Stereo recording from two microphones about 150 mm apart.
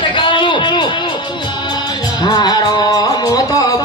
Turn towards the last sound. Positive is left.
turn(degrees=25)  # may be behind; listen again after turning